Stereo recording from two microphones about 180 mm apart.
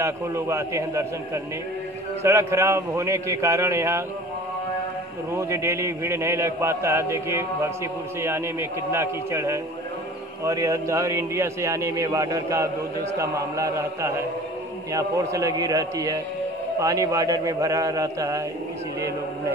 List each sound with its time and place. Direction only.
0.0 s a man's voice: 15° right (ahead or behind)
5.3 s a man's voice: 15° right (ahead or behind)